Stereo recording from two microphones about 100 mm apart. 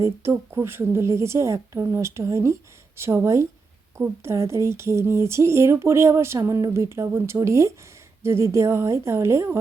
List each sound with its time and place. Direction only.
0.0 s speech: 30° right (ahead or behind)